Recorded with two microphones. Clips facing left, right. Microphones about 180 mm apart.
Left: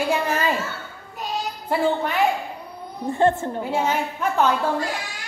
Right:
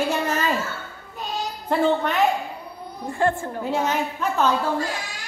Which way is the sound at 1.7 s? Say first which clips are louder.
Right 1 dB; 10° left (ahead or behind).